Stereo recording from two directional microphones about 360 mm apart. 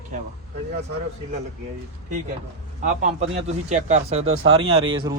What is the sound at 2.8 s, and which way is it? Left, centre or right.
A man's voice, centre.